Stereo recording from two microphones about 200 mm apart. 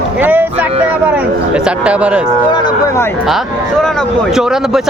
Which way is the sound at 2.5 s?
20° left (ahead or behind).